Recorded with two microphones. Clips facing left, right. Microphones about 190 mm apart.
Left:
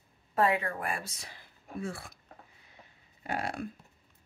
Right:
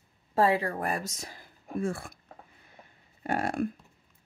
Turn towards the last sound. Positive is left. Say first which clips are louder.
# right 6 dB
turn(degrees=-50)  # may be behind; listen again after turning